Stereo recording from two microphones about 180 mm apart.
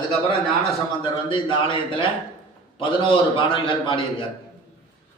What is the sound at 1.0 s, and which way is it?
A man's voice, 30° left (ahead or behind).